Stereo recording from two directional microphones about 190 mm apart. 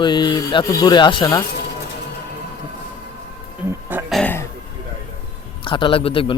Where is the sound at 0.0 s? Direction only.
25° left (ahead or behind).